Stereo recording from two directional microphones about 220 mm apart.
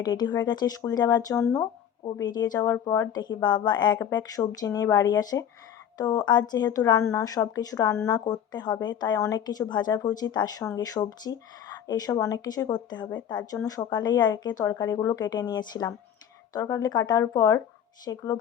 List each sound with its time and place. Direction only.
0.0 s a woman's voice: 20° left (ahead or behind)